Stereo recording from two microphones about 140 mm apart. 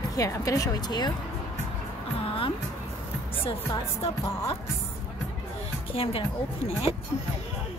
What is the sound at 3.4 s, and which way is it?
Speech, 40° left (ahead or behind).